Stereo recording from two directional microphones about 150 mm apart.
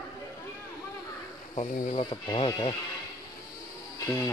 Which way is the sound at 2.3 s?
35° left (ahead or behind).